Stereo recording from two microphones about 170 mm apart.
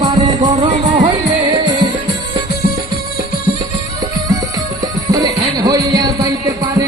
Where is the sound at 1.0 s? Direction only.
25° right (ahead or behind).